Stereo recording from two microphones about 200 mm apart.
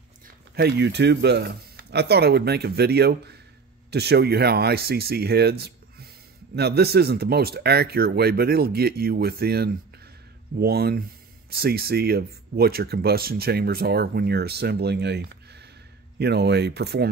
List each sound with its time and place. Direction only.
0.6 s speech: 55° right (ahead or behind)